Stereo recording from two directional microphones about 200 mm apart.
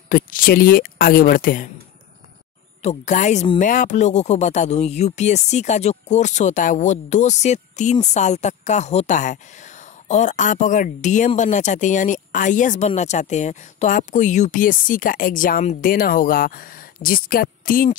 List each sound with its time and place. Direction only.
0.1 s speech: 45° left (ahead or behind)
2.8 s speech: 35° left (ahead or behind)